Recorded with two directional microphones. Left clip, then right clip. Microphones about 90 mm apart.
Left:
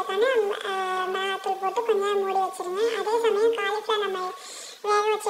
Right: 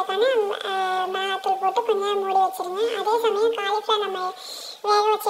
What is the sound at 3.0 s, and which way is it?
A child's voice, 20° right (ahead or behind).